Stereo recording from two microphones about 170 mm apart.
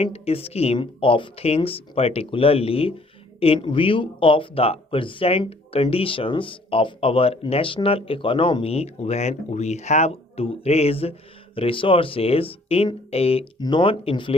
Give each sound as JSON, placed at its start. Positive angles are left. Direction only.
{"t": 0.0, "sound": "speech", "side_deg": 35}